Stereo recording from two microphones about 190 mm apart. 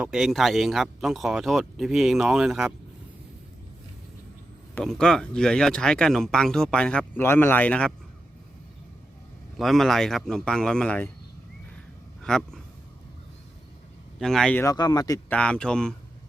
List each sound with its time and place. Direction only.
0.0 s speech: 5° right (ahead or behind)
4.7 s speech: 5° left (ahead or behind)
9.6 s speech: centre (ahead or behind)
12.3 s speech: 5° left (ahead or behind)
14.2 s speech: 5° left (ahead or behind)
14.6 s speech: 20° left (ahead or behind)
15.3 s speech: 5° left (ahead or behind)